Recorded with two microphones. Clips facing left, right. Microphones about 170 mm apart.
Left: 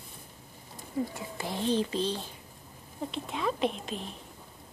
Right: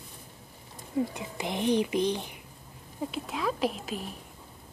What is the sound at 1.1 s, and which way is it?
Speech, 20° right (ahead or behind).